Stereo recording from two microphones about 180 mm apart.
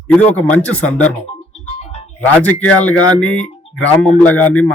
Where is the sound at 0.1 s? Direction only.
10° left (ahead or behind).